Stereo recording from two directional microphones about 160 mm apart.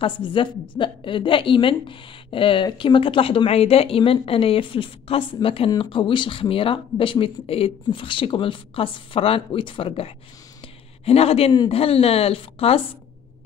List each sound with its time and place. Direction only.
0.0 s a woman's voice: 30° left (ahead or behind)